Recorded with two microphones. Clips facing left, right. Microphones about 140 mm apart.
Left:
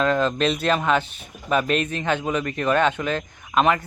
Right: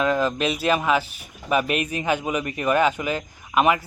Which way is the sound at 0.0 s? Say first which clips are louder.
Left 1 dB; 10° right (ahead or behind).